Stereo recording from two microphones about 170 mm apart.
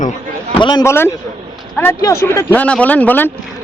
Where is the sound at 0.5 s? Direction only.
30° left (ahead or behind).